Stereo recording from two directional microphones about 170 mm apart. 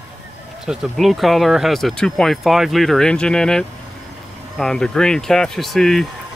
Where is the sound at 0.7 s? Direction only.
Centre (ahead or behind).